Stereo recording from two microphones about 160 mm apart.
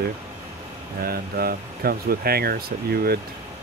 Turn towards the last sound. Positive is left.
turn(degrees=-75)  # may be behind; listen again after turning